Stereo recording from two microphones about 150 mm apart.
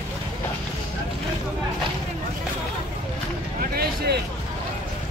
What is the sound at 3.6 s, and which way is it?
Vehicle, 90° right.